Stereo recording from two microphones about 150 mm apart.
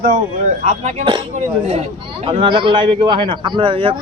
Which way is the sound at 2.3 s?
35° right (ahead or behind).